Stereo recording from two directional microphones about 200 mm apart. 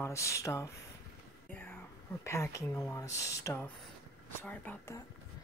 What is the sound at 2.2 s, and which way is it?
Speech, 15° left (ahead or behind).